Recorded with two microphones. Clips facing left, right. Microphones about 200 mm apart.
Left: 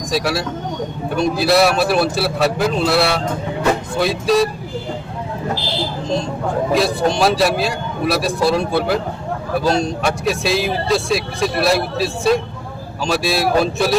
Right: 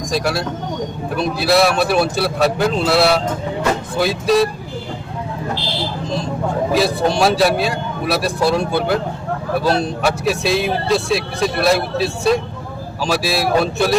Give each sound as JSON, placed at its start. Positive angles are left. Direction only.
{"t": 0.1, "sound": "speech", "side_deg": 0}
{"t": 6.7, "sound": "speech", "side_deg": 0}